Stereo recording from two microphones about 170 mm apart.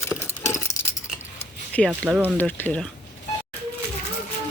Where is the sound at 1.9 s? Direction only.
10° right (ahead or behind).